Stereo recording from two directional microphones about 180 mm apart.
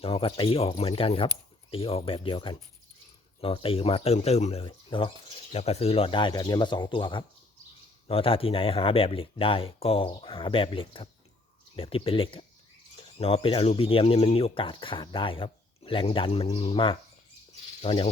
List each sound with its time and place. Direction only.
0.0 s speech: 30° left (ahead or behind)